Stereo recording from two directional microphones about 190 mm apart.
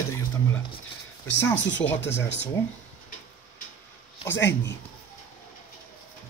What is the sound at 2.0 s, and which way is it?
Speech, 65° left (ahead or behind).